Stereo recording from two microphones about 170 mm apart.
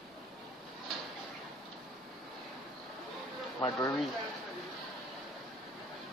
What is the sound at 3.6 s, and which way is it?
Speech, 25° left (ahead or behind).